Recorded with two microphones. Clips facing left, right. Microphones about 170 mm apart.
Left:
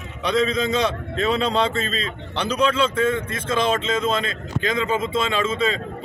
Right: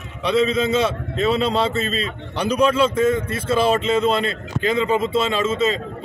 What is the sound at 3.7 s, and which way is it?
Speech, 35° right (ahead or behind).